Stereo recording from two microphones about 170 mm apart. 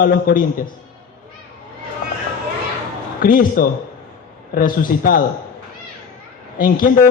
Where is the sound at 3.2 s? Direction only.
55° left (ahead or behind).